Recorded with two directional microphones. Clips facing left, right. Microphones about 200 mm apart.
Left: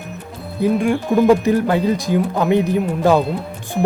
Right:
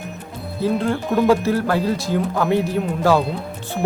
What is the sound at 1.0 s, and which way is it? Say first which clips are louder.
Speech: left 3 dB; centre (ahead or behind).